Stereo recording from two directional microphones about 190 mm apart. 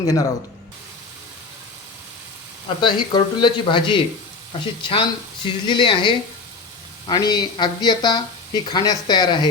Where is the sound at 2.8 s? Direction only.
25° left (ahead or behind).